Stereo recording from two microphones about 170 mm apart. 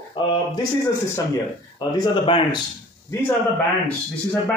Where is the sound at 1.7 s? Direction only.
25° left (ahead or behind).